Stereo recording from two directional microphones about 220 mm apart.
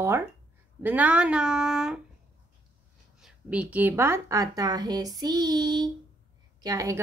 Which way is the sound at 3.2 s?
5° right (ahead or behind).